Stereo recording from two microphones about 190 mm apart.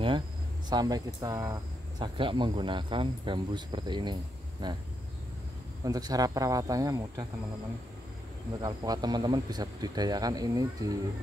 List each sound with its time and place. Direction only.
0.7 s speech: 20° right (ahead or behind)
5.9 s speech: 20° right (ahead or behind)
8.5 s speech: 20° right (ahead or behind)